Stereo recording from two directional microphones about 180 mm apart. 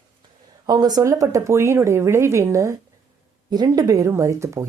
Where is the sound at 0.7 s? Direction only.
20° right (ahead or behind).